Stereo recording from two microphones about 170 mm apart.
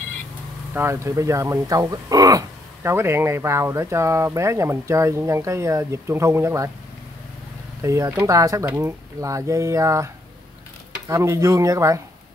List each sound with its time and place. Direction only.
0.7 s speech: 15° right (ahead or behind)
7.8 s speech: 20° right (ahead or behind)